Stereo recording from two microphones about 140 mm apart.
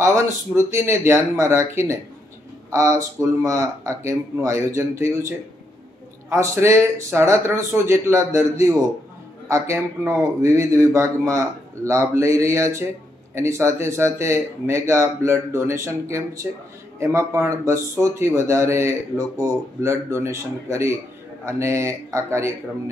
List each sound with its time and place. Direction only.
0.0 s speech: 20° right (ahead or behind)
6.3 s speech: 20° right (ahead or behind)